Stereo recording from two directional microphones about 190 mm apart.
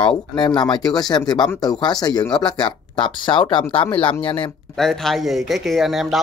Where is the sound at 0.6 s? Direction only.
25° left (ahead or behind).